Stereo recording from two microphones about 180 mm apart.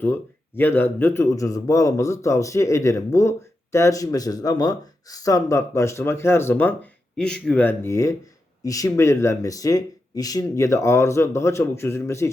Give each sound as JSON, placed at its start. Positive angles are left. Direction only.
{"t": 0.0, "sound": "a man's voice", "side_deg": 10}